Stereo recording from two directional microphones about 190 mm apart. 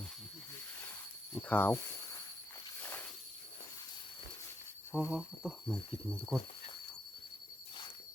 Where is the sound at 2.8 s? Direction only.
10° left (ahead or behind).